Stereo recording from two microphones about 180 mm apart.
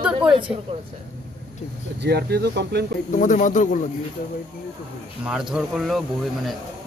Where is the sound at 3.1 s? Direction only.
45° left (ahead or behind).